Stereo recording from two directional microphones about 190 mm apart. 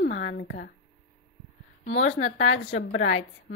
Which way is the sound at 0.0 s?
75° left (ahead or behind).